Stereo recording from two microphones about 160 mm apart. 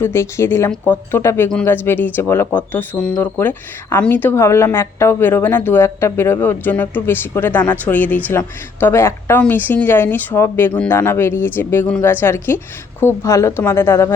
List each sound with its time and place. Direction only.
0.0 s speech: 15° left (ahead or behind)